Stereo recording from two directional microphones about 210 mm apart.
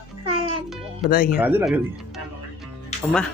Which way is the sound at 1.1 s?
45° left (ahead or behind).